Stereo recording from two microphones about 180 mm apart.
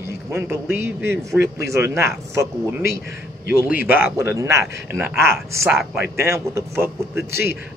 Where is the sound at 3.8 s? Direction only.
10° right (ahead or behind).